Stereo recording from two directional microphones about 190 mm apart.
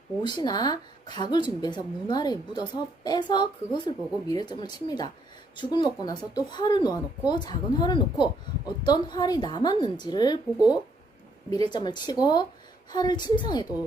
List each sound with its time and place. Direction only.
0.2 s a woman's voice: 25° left (ahead or behind)
11.7 s a woman's voice: 25° left (ahead or behind)